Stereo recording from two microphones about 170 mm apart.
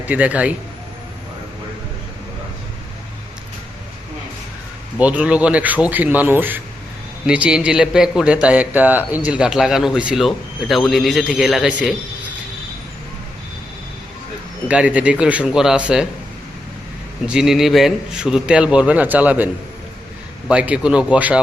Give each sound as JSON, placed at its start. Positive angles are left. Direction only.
{"t": 0.0, "sound": "speech", "side_deg": -10}
{"t": 4.9, "sound": "a man's voice", "side_deg": -10}
{"t": 14.7, "sound": "speech", "side_deg": -5}
{"t": 17.2, "sound": "a man's voice", "side_deg": -5}
{"t": 20.5, "sound": "speech", "side_deg": -5}